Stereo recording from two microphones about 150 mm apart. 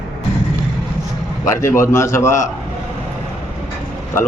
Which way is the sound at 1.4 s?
20° left (ahead or behind).